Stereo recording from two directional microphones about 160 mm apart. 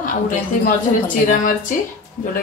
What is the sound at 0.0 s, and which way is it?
A woman's voice, 55° left (ahead or behind).